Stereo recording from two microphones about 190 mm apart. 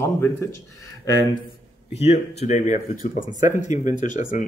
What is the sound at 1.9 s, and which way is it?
Speech, 35° left (ahead or behind).